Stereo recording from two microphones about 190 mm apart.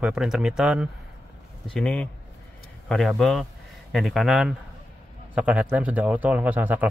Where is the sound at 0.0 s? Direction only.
5° right (ahead or behind).